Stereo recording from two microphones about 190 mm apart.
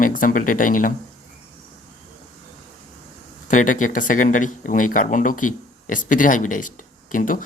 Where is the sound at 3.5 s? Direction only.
40° left (ahead or behind).